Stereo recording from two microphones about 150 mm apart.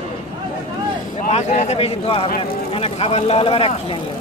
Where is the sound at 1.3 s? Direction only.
50° left (ahead or behind).